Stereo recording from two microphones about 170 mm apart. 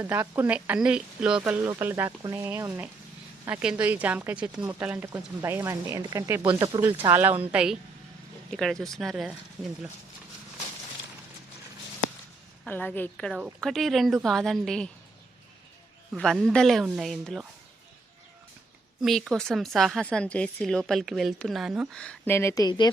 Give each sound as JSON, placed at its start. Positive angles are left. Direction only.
{"t": 0.0, "sound": "a woman's voice", "side_deg": -10}
{"t": 12.6, "sound": "a woman's voice", "side_deg": 10}
{"t": 16.1, "sound": "a woman's voice", "side_deg": 0}
{"t": 19.0, "sound": "a woman's voice", "side_deg": 0}